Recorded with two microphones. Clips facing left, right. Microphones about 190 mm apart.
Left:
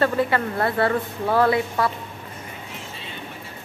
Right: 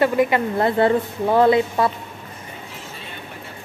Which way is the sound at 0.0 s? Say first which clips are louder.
Right 3 dB; 15° right (ahead or behind).